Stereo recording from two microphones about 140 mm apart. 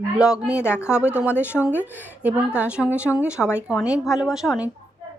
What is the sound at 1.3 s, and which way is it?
Speech, 15° left (ahead or behind).